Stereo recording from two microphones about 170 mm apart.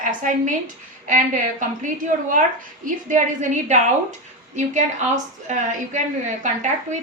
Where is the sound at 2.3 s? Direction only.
50° right (ahead or behind).